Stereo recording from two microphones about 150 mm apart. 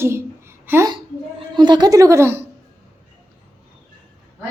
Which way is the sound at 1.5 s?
30° right (ahead or behind).